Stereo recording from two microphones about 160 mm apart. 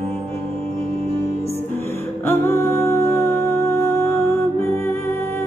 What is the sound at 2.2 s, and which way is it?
Music, 15° left (ahead or behind).